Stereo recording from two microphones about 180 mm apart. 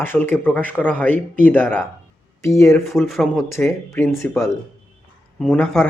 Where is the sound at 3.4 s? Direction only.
15° left (ahead or behind).